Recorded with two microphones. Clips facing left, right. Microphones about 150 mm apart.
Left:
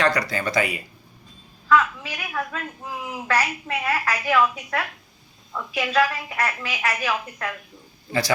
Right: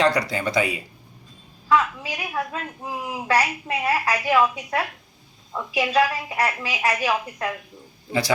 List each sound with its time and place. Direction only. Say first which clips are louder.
0.0 s speech: right 2 dB; 25° right (ahead or behind)
1.7 s a woman's voice: left 1 dB; 20° right (ahead or behind)